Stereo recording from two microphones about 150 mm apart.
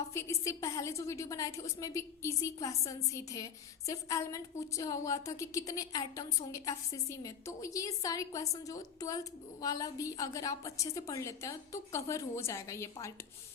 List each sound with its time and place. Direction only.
0.1 s a woman's voice: 20° left (ahead or behind)